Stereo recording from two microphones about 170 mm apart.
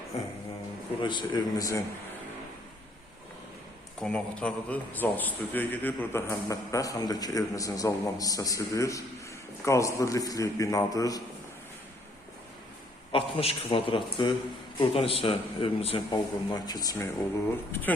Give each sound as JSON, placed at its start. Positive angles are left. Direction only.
{"t": 1.0, "sound": "a man's voice", "side_deg": 25}
{"t": 4.0, "sound": "a man's voice", "side_deg": 5}
{"t": 13.1, "sound": "a man's voice", "side_deg": 30}